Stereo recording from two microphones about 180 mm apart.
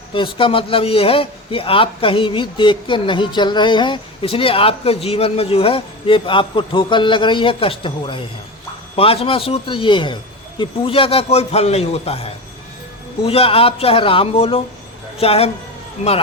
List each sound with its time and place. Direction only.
0.1 s a man's voice: 30° left (ahead or behind)